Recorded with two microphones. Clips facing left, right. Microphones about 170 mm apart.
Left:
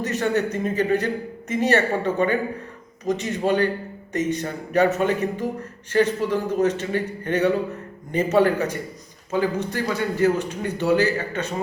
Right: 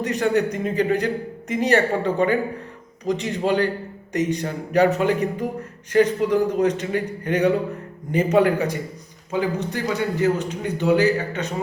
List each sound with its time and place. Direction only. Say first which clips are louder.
0.0 s a man's voice: right 2 dB; 15° right (ahead or behind)
3.4 s a man's voice: even; 20° left (ahead or behind)
4.1 s a man's voice: right 1 dB; 15° right (ahead or behind)